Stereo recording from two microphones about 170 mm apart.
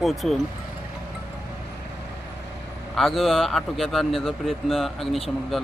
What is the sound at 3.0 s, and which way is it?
A man's voice, centre (ahead or behind).